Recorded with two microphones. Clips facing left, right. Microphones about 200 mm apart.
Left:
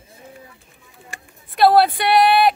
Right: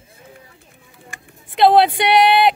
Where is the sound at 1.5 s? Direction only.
20° right (ahead or behind).